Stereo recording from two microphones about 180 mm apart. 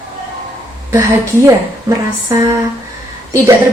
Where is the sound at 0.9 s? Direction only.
15° right (ahead or behind).